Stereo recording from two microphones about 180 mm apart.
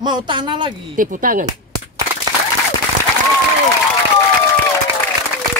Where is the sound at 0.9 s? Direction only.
50° right (ahead or behind).